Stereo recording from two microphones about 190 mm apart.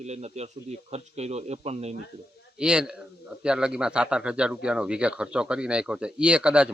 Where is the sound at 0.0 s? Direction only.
35° right (ahead or behind).